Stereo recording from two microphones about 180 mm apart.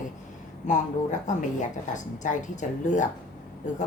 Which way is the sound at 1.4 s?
45° left (ahead or behind).